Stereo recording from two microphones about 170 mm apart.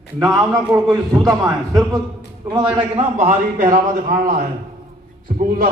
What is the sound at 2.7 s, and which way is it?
A man's voice, 35° right (ahead or behind).